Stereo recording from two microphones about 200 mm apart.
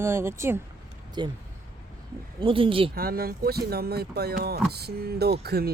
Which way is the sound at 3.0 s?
50° right (ahead or behind).